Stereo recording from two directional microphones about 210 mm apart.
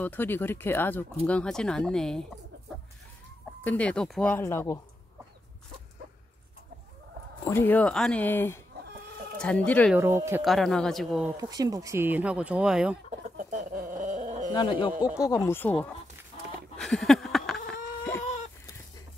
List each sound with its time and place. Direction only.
0.0 s speech: 10° left (ahead or behind)
3.6 s speech: 5° left (ahead or behind)
7.4 s speech: 10° left (ahead or behind)
9.9 s speech: 10° right (ahead or behind)
10.4 s speech: centre (ahead or behind)
11.3 s speech: 15° right (ahead or behind)
13.4 s a sound: 40° right (ahead or behind)
14.5 s speech: 25° left (ahead or behind)
16.7 s a sound: centre (ahead or behind)
18.2 s a sound: 35° left (ahead or behind)